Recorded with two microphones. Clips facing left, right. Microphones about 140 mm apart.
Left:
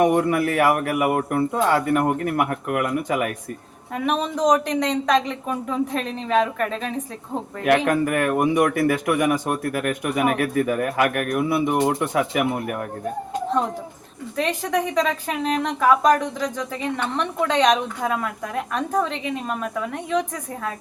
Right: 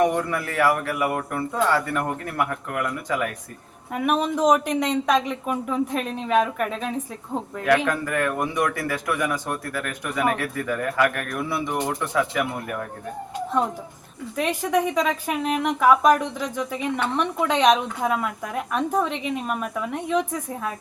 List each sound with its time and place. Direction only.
0.0 s speech: 20° left (ahead or behind)
3.9 s a woman's voice: 5° right (ahead or behind)
7.6 s speech: 20° left (ahead or behind)
14.3 s a woman's voice: 10° right (ahead or behind)